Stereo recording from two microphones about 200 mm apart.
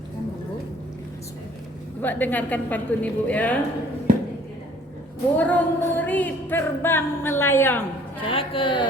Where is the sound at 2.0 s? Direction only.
10° left (ahead or behind).